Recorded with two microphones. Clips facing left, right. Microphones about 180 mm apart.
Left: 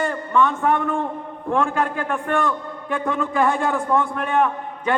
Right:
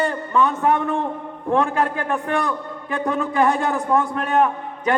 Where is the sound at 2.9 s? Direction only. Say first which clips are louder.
Right 1 dB; 35° right (ahead or behind).